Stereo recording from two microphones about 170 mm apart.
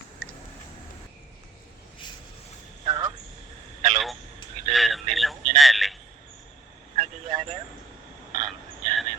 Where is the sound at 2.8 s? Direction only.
25° right (ahead or behind).